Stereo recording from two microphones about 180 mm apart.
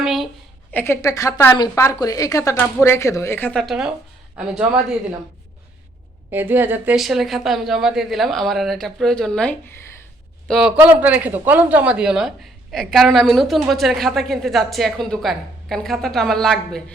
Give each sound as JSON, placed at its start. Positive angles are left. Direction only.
{"t": 0.0, "sound": "a sound", "side_deg": 0}
{"t": 0.7, "sound": "a woman's voice", "side_deg": 10}
{"t": 6.3, "sound": "a woman's voice", "side_deg": -10}